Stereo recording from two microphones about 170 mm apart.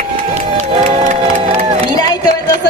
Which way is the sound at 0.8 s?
40° right (ahead or behind).